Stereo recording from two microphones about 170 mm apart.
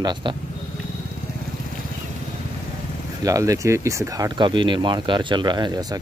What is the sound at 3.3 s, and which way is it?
Speech, 20° right (ahead or behind).